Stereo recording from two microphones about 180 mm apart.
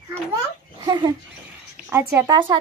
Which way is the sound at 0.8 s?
20° right (ahead or behind).